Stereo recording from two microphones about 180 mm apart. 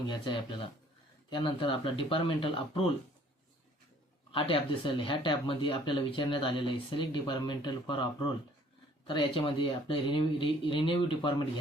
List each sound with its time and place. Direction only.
0.1 s speech: 25° left (ahead or behind)
4.3 s speech: 30° left (ahead or behind)